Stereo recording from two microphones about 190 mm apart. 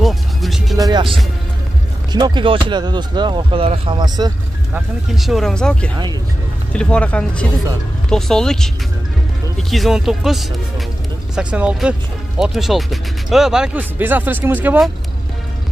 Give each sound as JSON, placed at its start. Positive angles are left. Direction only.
{"t": 0.0, "sound": "music", "side_deg": 0}
{"t": 0.7, "sound": "speech", "side_deg": -20}
{"t": 4.7, "sound": "speech", "side_deg": 0}